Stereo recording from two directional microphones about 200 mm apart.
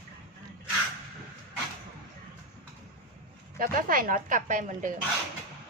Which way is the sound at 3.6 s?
45° right (ahead or behind).